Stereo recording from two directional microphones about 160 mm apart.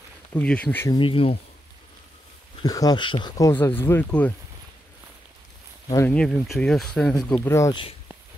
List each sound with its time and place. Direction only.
0.3 s speech: 10° left (ahead or behind)
0.9 s speech: 35° left (ahead or behind)
2.6 s speech: 25° left (ahead or behind)
6.0 s speech: 5° left (ahead or behind)
7.3 s speech: 20° left (ahead or behind)